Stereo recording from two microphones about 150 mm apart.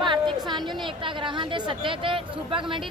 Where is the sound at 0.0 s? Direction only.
30° right (ahead or behind).